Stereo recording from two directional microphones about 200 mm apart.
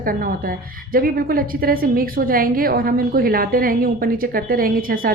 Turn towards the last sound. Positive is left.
turn(degrees=-45)  # may be behind; listen again after turning